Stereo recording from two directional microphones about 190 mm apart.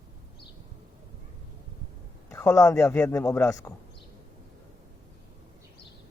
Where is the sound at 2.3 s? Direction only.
15° left (ahead or behind).